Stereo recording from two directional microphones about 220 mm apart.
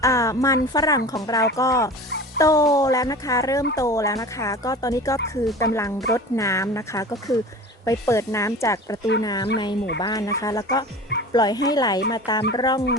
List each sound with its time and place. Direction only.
0.0 s speech: 15° left (ahead or behind)